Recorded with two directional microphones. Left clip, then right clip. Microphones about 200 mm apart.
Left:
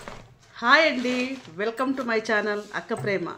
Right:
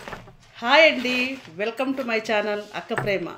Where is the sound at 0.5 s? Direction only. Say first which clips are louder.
Right 3 dB; 5° left (ahead or behind).